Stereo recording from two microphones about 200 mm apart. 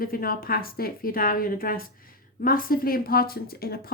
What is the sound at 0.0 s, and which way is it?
Speech, 45° left (ahead or behind).